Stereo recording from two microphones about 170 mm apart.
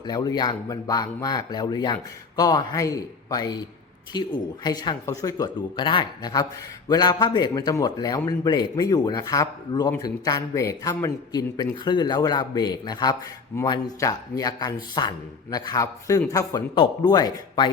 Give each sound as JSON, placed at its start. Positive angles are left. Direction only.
{"t": 0.0, "sound": "speech", "side_deg": 25}